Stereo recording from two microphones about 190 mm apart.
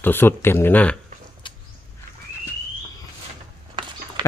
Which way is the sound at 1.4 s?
25° left (ahead or behind).